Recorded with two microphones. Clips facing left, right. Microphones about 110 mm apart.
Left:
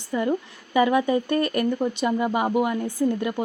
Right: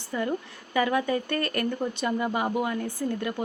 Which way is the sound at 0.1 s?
20° left (ahead or behind).